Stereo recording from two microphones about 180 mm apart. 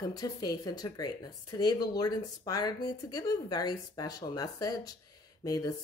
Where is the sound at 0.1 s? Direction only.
20° left (ahead or behind).